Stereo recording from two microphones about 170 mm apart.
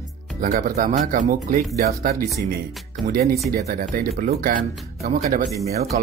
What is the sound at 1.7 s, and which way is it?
Speech, 65° right (ahead or behind).